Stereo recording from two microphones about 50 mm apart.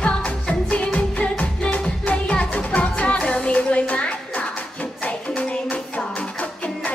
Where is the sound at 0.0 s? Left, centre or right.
Left.